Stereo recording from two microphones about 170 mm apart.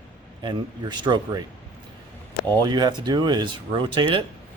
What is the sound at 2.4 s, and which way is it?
Speech, 25° right (ahead or behind).